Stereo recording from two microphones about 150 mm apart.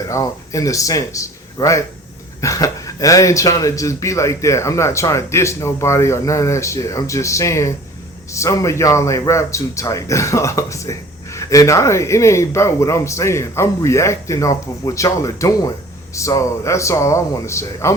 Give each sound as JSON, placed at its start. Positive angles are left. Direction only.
{"t": 0.1, "sound": "a man's voice", "side_deg": 20}